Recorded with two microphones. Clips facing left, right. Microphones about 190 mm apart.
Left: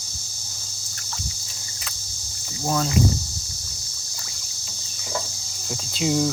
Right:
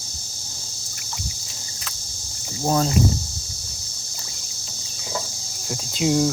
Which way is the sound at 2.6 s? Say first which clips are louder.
Right 3 dB; 35° right (ahead or behind).